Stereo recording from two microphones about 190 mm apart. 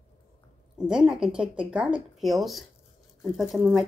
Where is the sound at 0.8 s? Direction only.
5° right (ahead or behind).